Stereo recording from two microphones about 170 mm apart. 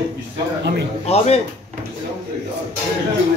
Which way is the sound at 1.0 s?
40° left (ahead or behind).